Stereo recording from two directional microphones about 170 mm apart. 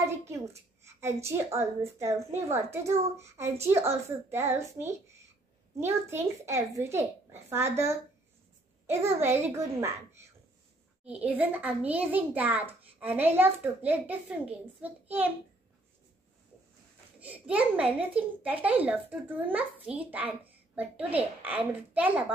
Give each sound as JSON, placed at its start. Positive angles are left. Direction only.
{"t": 0.3, "sound": "a child's voice", "side_deg": -15}
{"t": 9.0, "sound": "a child's voice", "side_deg": -15}
{"t": 17.2, "sound": "a child's voice", "side_deg": -10}